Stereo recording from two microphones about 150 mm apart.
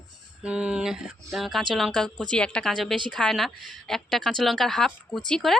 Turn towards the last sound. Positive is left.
turn(degrees=5)  # may be behind; listen again after turning